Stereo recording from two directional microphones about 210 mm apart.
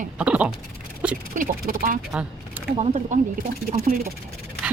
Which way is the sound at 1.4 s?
40° right (ahead or behind).